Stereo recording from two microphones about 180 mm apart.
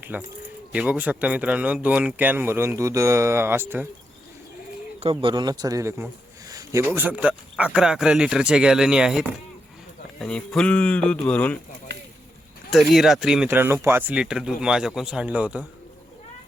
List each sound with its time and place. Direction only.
0.0 s speech: 10° right (ahead or behind)
4.9 s speech: 30° right (ahead or behind); by 11.6 s 5° left (ahead or behind)
12.7 s speech: centre (ahead or behind)